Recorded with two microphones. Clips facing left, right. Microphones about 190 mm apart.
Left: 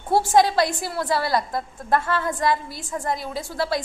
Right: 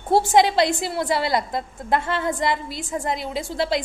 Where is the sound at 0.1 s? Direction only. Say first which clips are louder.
Right 1 dB; 20° right (ahead or behind).